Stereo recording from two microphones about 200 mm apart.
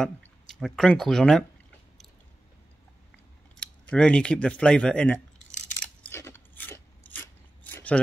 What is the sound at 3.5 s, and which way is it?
Speech, 5° left (ahead or behind).